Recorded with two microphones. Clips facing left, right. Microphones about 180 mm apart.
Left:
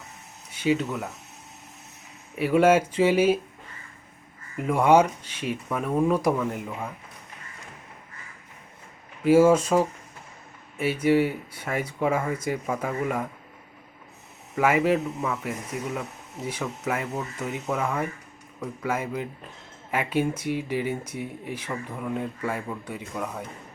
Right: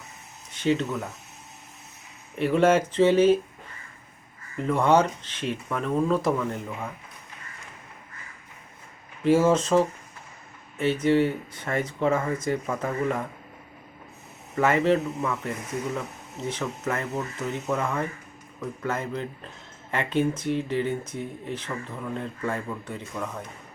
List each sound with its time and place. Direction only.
0.5 s speech: 10° left (ahead or behind)
2.3 s speech: 5° left (ahead or behind)
4.5 s speech: 10° left (ahead or behind)
9.2 s speech: 10° left (ahead or behind)
14.5 s speech: 10° left (ahead or behind)